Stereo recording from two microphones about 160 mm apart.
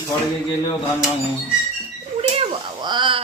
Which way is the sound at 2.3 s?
35° right (ahead or behind).